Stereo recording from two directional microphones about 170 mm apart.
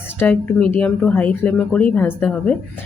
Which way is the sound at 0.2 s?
10° left (ahead or behind).